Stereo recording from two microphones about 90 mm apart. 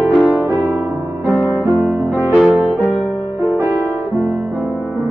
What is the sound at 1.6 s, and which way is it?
Music, 20° right (ahead or behind).